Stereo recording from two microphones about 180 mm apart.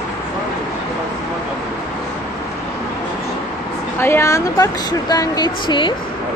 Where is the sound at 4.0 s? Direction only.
15° left (ahead or behind).